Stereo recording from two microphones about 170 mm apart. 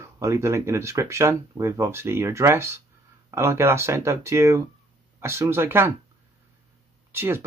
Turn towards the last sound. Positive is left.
turn(degrees=-15)  # may be behind; listen again after turning